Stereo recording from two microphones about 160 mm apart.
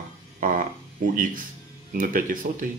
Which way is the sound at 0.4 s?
60° right (ahead or behind).